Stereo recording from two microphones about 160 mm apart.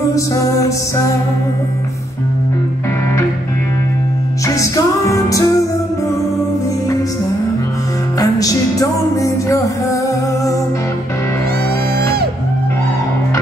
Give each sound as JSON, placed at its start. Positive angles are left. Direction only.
{"t": 0.1, "sound": "music", "side_deg": 20}
{"t": 4.6, "sound": "music", "side_deg": 20}
{"t": 8.2, "sound": "music", "side_deg": 20}